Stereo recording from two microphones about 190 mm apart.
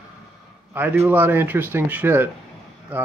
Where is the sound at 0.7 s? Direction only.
10° right (ahead or behind).